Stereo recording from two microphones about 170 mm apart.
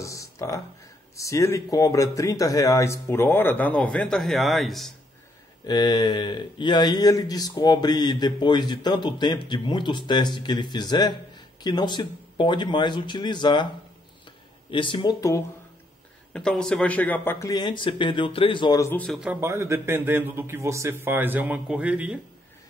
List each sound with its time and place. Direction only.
0.0 s a sound: 20° left (ahead or behind)
1.1 s speech: 20° left (ahead or behind); by 4.9 s centre (ahead or behind)
5.7 s speech: 25° left (ahead or behind)
14.7 s speech: 30° left (ahead or behind)
16.3 s speech: 5° left (ahead or behind)
19.0 s speech: 5° right (ahead or behind)
19.4 s speech: 15° right (ahead or behind)